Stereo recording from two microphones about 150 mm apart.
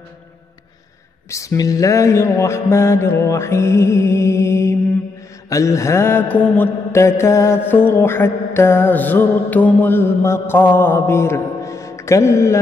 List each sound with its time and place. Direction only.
1.3 s mantra: 20° left (ahead or behind)